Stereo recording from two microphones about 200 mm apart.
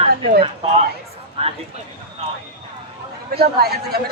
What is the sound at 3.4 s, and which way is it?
Speech, 50° right (ahead or behind).